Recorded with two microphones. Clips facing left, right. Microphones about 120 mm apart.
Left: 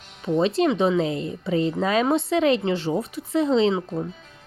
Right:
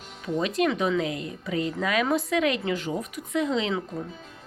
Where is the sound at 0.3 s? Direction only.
30° left (ahead or behind).